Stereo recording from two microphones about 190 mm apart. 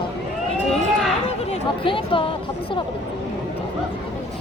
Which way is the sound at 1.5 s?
25° left (ahead or behind).